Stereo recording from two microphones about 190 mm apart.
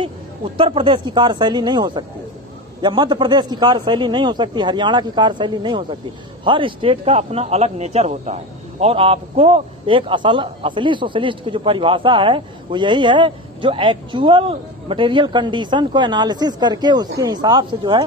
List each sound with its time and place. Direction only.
0.6 s speech: 25° right (ahead or behind)